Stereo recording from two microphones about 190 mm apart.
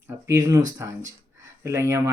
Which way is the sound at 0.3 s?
15° right (ahead or behind).